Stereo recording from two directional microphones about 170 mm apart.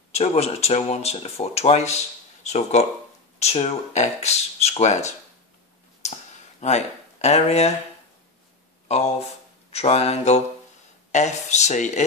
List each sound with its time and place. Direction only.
0.1 s speech: 40° left (ahead or behind)
6.0 s a sound: 40° left (ahead or behind)
6.6 s speech: 40° left (ahead or behind)
8.8 s speech: 40° left (ahead or behind)